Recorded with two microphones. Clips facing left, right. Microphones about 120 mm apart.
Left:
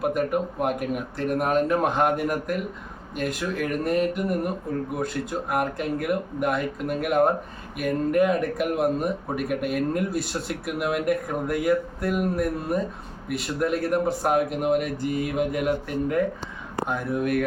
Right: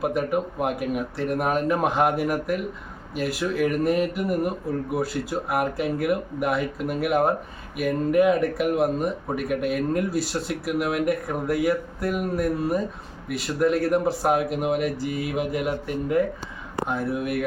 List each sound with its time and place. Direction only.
0.0 s speech: centre (ahead or behind)